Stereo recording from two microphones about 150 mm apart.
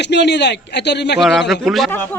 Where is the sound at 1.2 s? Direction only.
Centre (ahead or behind).